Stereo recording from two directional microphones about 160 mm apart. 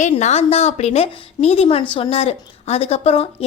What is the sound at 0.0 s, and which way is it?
A woman's voice, 45° left (ahead or behind).